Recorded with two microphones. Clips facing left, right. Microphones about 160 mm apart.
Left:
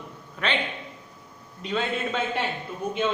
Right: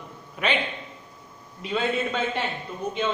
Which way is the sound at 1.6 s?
Centre (ahead or behind).